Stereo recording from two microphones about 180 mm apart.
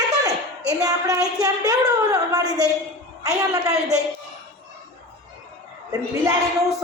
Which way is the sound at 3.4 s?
20° right (ahead or behind).